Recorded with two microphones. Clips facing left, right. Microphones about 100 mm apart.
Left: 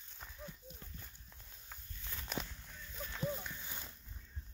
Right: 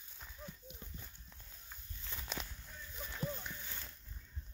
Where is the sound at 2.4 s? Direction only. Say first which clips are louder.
Left 7 dB; 20° left (ahead or behind).